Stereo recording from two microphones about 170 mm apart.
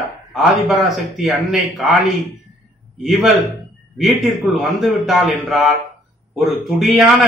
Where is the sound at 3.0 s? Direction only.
Centre (ahead or behind).